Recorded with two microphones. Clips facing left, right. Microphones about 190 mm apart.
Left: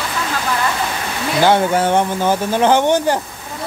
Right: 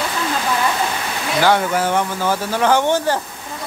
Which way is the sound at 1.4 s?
25° left (ahead or behind).